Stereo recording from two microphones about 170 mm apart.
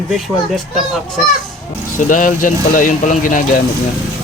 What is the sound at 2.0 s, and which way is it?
Speech, 50° left (ahead or behind).